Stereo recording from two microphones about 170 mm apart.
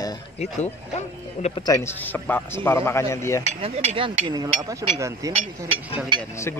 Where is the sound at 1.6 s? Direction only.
10° left (ahead or behind).